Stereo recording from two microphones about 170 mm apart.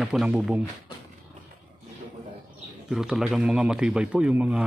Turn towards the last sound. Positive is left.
turn(degrees=-5)  # may be behind; listen again after turning